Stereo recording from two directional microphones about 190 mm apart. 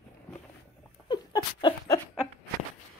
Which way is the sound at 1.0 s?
20° left (ahead or behind).